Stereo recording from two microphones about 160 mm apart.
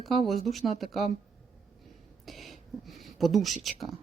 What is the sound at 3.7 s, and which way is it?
Speech, centre (ahead or behind).